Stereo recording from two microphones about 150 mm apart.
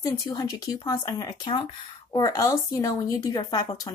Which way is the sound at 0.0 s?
25° left (ahead or behind).